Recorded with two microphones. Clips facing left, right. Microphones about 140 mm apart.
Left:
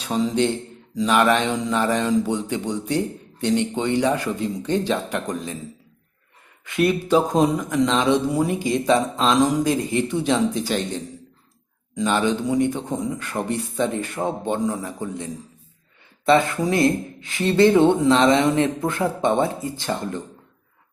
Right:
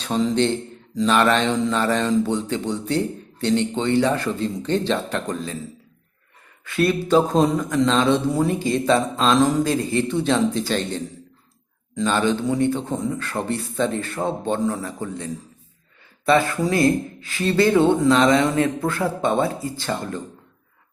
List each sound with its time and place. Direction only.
0.0 s speech: 10° left (ahead or behind)
6.7 s speech: 15° left (ahead or behind)